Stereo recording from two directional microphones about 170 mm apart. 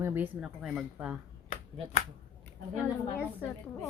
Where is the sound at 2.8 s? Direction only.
10° left (ahead or behind).